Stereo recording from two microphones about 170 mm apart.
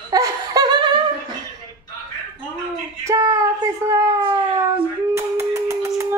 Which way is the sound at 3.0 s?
20° right (ahead or behind).